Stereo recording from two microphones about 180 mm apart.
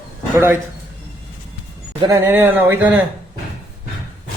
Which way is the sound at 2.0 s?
15° right (ahead or behind).